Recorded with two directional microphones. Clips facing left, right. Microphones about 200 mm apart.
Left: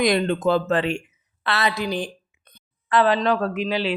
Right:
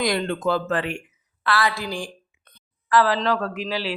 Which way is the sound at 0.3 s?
20° left (ahead or behind).